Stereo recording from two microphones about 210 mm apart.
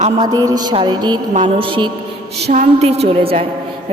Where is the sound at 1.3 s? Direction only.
35° right (ahead or behind).